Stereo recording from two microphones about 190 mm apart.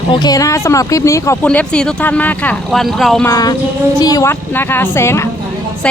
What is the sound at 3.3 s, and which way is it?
Speech, 20° left (ahead or behind).